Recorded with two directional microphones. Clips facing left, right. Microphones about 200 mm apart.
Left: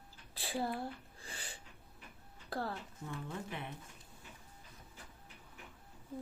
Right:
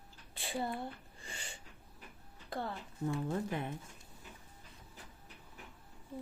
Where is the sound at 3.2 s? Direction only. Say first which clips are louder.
Right 7 dB; 40° right (ahead or behind).